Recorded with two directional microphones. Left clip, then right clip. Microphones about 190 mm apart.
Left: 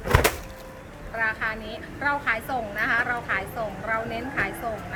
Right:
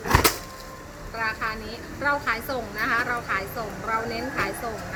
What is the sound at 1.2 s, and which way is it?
A woman's voice, 10° left (ahead or behind).